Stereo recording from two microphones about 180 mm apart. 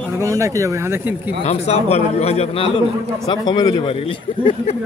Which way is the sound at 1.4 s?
35° left (ahead or behind).